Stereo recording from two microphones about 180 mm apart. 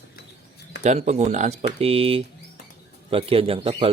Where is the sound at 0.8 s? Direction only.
40° right (ahead or behind).